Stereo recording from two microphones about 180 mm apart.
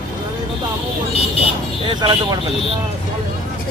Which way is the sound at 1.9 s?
25° right (ahead or behind).